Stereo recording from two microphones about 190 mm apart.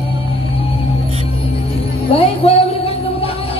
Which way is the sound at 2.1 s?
30° left (ahead or behind).